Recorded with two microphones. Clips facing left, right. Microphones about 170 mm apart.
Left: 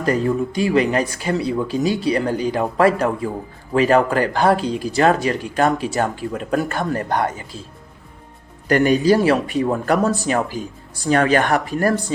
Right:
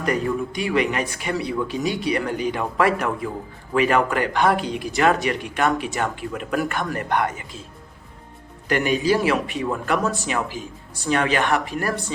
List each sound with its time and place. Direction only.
0.0 s speech: 30° left (ahead or behind)
8.6 s speech: 40° left (ahead or behind)